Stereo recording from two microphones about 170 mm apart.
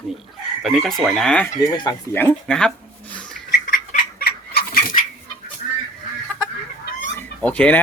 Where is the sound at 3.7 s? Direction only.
55° left (ahead or behind).